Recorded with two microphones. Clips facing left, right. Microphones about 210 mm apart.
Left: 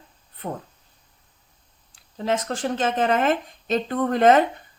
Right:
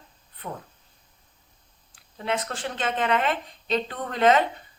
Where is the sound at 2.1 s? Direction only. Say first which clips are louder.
Left 4 dB; 40° left (ahead or behind).